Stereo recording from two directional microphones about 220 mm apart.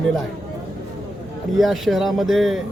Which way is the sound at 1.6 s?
Centre (ahead or behind).